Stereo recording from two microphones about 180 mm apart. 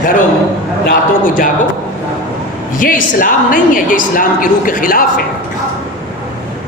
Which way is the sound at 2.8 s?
50° left (ahead or behind).